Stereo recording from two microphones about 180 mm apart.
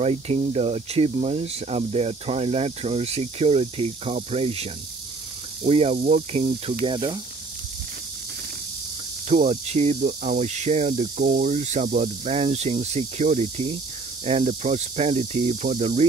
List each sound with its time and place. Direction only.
0.0 s speech: 35° right (ahead or behind)
6.9 s speech: 30° right (ahead or behind)
9.4 s speech: 40° right (ahead or behind)
9.9 s speech: 50° right (ahead or behind)
11.2 s speech: 55° right (ahead or behind)
11.5 s speech: 40° right (ahead or behind)